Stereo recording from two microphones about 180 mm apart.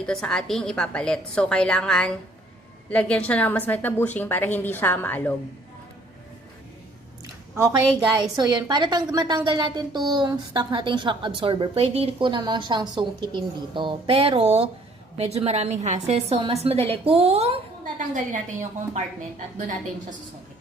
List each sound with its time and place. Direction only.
0.0 s a woman's voice: 5° left (ahead or behind)
7.5 s a woman's voice: 15° right (ahead or behind); by 20.1 s 45° right (ahead or behind)